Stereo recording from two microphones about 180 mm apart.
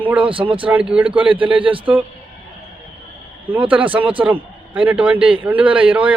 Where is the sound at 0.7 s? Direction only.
5° right (ahead or behind).